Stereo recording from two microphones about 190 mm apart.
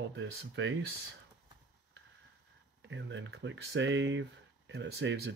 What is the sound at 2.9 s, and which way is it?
Speech, 75° right (ahead or behind).